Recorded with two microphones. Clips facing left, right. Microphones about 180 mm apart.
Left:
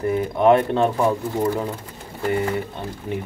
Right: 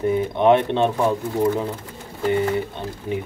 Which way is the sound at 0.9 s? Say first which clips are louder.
Even; centre (ahead or behind).